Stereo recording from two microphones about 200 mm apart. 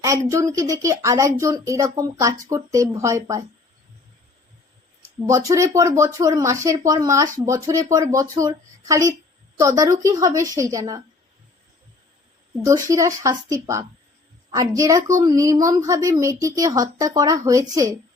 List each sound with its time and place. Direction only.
0.0 s speech: 15° right (ahead or behind)
5.5 s speech: 15° right (ahead or behind)
12.6 s speech: 15° right (ahead or behind)